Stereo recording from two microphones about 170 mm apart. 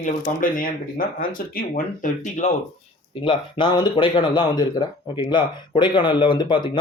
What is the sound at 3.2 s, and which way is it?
Speech, 30° left (ahead or behind).